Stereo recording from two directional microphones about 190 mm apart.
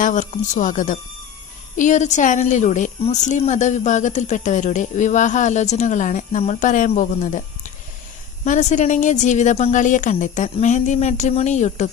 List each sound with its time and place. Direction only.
0.0 s a woman's voice: 40° left (ahead or behind)